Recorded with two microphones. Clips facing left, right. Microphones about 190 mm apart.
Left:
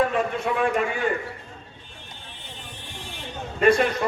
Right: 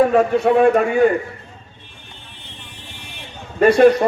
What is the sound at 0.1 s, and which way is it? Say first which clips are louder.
A man's voice: right 10 dB; 50° right (ahead or behind).